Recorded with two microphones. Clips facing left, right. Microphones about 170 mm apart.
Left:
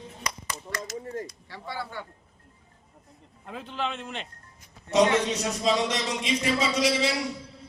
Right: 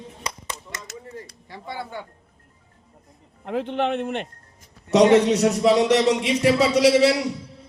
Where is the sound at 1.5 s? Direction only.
20° right (ahead or behind).